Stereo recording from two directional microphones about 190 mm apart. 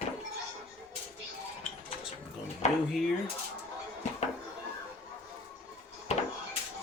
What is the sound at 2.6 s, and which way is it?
Speech, 35° left (ahead or behind).